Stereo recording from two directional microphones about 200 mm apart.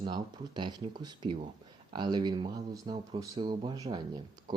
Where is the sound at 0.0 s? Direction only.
20° right (ahead or behind).